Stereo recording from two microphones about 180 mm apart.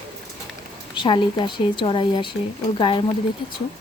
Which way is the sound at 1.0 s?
25° left (ahead or behind).